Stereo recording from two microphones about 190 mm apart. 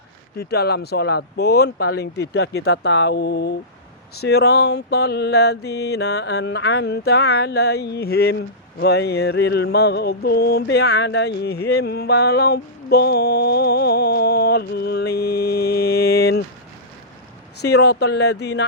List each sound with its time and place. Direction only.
0.3 s mantra: 55° left (ahead or behind)
17.6 s mantra: 60° left (ahead or behind)